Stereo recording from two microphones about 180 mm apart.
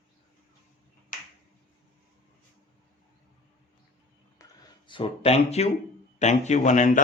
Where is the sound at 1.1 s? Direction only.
50° left (ahead or behind).